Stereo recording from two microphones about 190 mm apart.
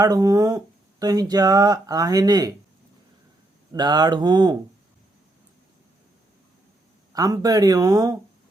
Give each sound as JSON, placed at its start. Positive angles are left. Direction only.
{"t": 0.0, "sound": "speech", "side_deg": -20}
{"t": 3.7, "sound": "speech", "side_deg": -20}
{"t": 7.1, "sound": "speech", "side_deg": -20}